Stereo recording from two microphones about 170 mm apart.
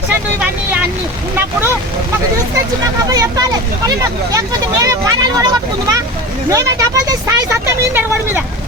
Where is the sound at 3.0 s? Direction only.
20° right (ahead or behind).